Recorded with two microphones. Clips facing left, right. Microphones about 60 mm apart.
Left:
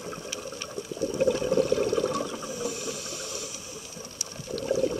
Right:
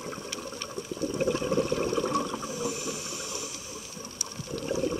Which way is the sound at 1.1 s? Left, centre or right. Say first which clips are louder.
Left 3 dB; right.